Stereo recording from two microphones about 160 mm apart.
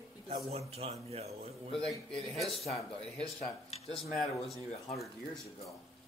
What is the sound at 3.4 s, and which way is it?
Speech, 40° left (ahead or behind).